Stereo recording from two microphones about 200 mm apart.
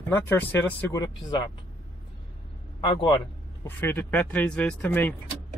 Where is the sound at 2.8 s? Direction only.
25° left (ahead or behind).